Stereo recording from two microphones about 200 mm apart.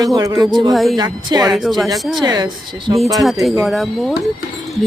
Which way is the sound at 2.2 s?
20° right (ahead or behind).